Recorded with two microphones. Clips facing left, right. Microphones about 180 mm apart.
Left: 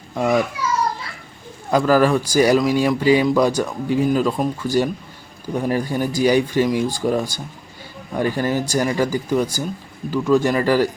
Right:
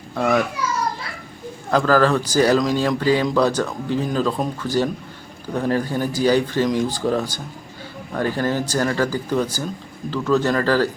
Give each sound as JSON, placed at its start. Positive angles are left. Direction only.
{"t": 0.1, "sound": "a child's voice", "side_deg": 15}
{"t": 1.7, "sound": "speech", "side_deg": 10}